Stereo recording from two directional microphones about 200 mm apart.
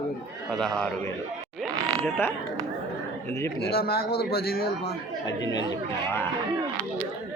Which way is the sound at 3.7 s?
50° left (ahead or behind).